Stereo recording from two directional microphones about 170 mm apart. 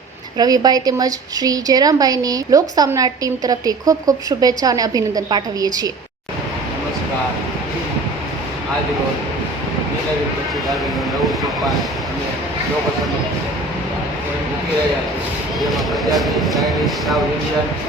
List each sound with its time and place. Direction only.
0.3 s a woman's voice: 25° right (ahead or behind)
15.7 s speech: centre (ahead or behind)